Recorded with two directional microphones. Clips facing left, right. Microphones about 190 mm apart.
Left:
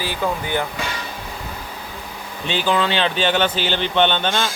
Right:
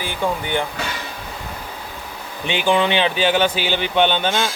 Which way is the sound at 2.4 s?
15° right (ahead or behind).